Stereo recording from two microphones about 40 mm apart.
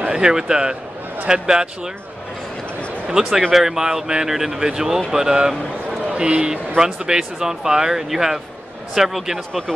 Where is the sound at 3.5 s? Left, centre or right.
Centre.